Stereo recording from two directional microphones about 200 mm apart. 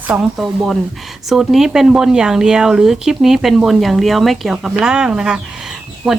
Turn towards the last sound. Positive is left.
turn(degrees=-5)  # may be behind; listen again after turning